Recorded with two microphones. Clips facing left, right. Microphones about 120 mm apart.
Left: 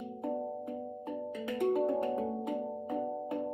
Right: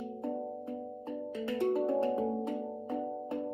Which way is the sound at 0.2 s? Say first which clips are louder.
Left 3 dB; 20° left (ahead or behind).